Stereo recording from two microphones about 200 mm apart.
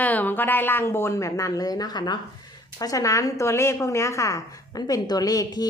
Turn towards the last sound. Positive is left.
turn(degrees=20)  # may be behind; listen again after turning